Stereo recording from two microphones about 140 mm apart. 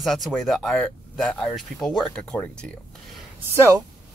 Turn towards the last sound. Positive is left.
turn(degrees=-20)  # may be behind; listen again after turning